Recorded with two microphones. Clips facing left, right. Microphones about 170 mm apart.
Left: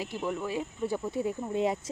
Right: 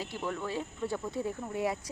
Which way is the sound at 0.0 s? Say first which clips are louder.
Left 3 dB; 15° left (ahead or behind).